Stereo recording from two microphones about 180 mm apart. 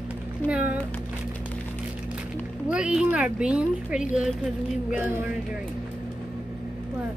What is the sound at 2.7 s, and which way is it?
A woman's voice, 5° right (ahead or behind).